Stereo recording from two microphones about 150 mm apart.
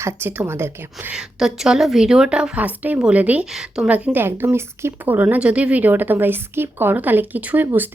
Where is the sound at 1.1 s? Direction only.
5° right (ahead or behind).